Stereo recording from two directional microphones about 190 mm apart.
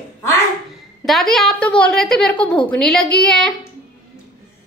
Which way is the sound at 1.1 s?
Centre (ahead or behind).